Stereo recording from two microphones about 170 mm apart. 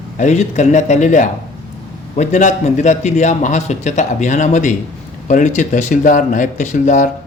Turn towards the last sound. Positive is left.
turn(degrees=45)  # may be behind; listen again after turning